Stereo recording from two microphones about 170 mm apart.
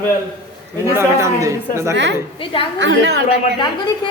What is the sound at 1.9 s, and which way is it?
A woman's voice, 90° right.